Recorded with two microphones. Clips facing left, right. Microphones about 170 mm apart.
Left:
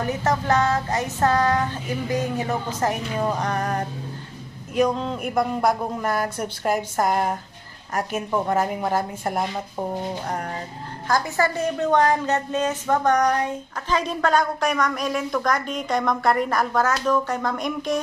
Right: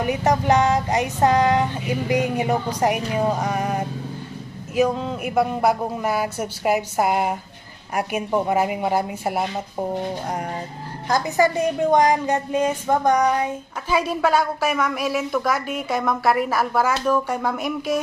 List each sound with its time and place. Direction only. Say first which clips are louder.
0.0 s a woman's voice: right 3 dB; 15° right (ahead or behind)
11.1 s a woman's voice: right 3 dB; 20° right (ahead or behind)